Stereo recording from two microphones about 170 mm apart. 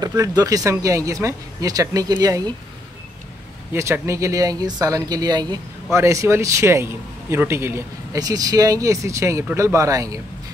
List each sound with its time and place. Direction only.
0.0 s speech: 20° right (ahead or behind)
3.7 s a man's voice: 15° right (ahead or behind)